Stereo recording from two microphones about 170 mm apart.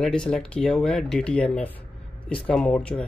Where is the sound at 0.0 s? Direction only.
5° left (ahead or behind).